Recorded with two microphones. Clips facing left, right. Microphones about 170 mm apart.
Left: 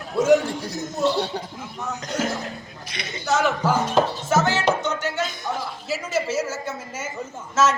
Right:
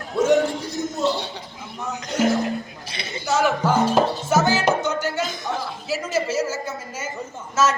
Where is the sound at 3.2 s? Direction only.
5° right (ahead or behind).